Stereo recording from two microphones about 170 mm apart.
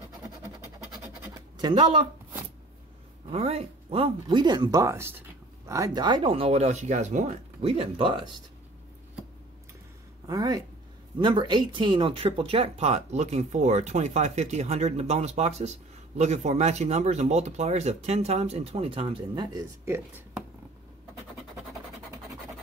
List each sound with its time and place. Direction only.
1.6 s speech: 30° right (ahead or behind)
3.3 s speech: 35° right (ahead or behind)
10.2 s speech: 20° right (ahead or behind)
19.8 s speech: 15° right (ahead or behind)